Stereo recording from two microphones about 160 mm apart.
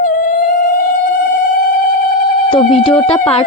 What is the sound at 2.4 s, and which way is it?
Speech, 35° left (ahead or behind).